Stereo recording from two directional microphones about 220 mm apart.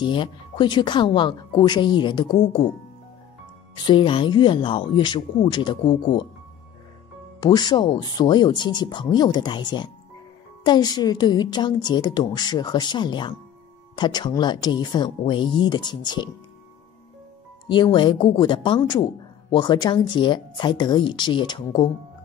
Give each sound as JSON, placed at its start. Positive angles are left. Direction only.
{"t": 0.0, "sound": "a woman's voice", "side_deg": 20}
{"t": 3.7, "sound": "a woman's voice", "side_deg": 20}
{"t": 5.9, "sound": "speech", "side_deg": 35}
{"t": 7.3, "sound": "a woman's voice", "side_deg": 20}
{"t": 17.6, "sound": "a woman's voice", "side_deg": 20}